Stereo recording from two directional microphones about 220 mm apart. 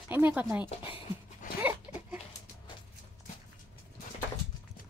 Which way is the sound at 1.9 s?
10° right (ahead or behind).